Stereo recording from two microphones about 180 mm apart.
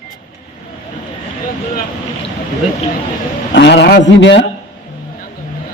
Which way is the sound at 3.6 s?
70° left (ahead or behind).